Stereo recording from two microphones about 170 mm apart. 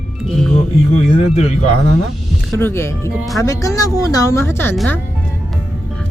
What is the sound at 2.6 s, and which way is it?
Speech, 15° left (ahead or behind).